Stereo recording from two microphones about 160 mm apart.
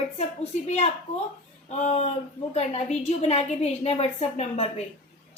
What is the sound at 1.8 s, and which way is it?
A woman's voice, 45° left (ahead or behind).